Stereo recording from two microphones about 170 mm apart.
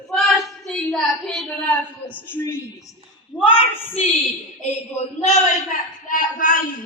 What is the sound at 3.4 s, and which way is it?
A man's voice, 30° left (ahead or behind).